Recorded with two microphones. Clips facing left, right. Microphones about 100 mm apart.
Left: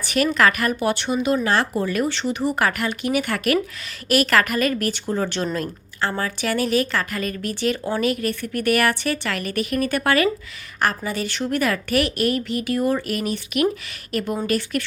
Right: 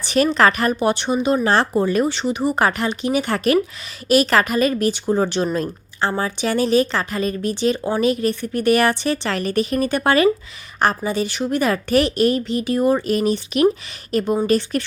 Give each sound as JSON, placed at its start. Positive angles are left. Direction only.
{"t": 0.0, "sound": "a woman's voice", "side_deg": -30}